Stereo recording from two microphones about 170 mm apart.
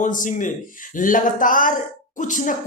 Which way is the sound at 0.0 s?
50° left (ahead or behind).